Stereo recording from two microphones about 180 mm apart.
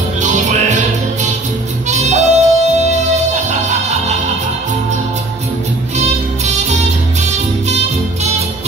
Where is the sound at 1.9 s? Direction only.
40° right (ahead or behind).